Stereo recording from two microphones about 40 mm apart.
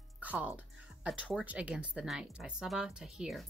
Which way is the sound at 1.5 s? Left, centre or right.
Right.